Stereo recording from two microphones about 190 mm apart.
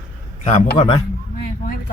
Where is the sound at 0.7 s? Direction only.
25° left (ahead or behind).